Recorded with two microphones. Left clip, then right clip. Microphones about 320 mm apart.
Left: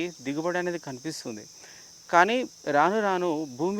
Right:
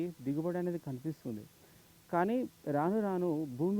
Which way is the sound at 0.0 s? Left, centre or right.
Centre.